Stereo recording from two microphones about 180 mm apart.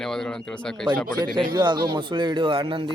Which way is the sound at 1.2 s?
25° right (ahead or behind).